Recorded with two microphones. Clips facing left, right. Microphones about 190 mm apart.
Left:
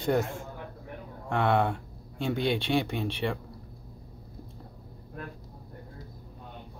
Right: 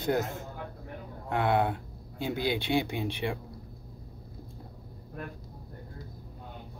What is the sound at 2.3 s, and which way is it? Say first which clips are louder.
Speech: left 1 dB; 15° right (ahead or behind).